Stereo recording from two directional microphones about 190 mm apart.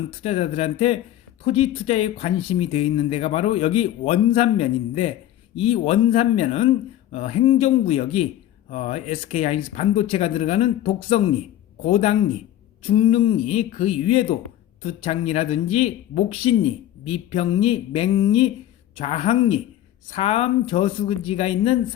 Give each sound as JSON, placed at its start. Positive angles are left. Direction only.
{"t": 0.2, "sound": "a man's voice", "side_deg": 30}